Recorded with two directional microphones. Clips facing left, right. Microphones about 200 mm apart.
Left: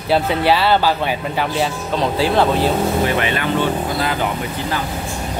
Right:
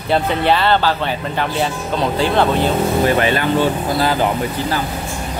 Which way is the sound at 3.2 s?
35° right (ahead or behind).